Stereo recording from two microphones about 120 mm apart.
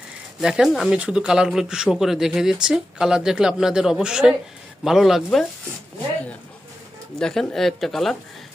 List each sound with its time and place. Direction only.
0.3 s speech: 5° right (ahead or behind)
7.2 s speech: 5° left (ahead or behind)